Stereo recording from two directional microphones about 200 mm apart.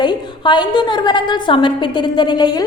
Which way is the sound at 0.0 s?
20° left (ahead or behind).